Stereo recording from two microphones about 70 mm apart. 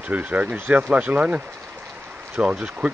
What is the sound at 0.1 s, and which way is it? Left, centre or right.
Speech, right.